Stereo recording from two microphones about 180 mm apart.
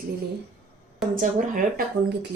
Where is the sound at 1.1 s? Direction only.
50° right (ahead or behind).